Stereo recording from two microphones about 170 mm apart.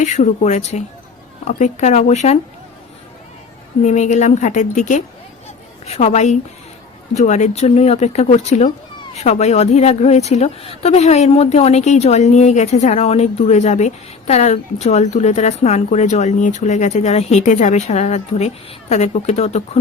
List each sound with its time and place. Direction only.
0.0 s speech: 45° left (ahead or behind)
3.8 s speech: 45° left (ahead or behind)